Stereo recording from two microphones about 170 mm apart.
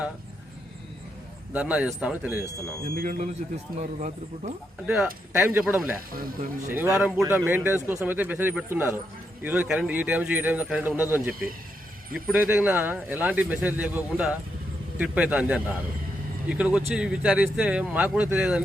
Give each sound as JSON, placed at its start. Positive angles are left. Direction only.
{"t": 1.5, "sound": "speech", "side_deg": -5}
{"t": 2.9, "sound": "speech", "side_deg": -55}
{"t": 3.8, "sound": "speech", "side_deg": -45}
{"t": 4.9, "sound": "speech", "side_deg": -5}
{"t": 6.1, "sound": "speech", "side_deg": -60}
{"t": 6.9, "sound": "speech", "side_deg": -5}